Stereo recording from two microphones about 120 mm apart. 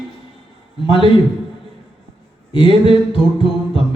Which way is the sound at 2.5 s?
45° left (ahead or behind).